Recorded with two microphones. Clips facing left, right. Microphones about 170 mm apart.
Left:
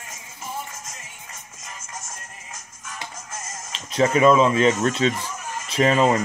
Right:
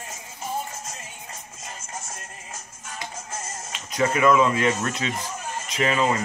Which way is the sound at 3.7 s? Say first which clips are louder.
Left 3 dB; 25° left (ahead or behind).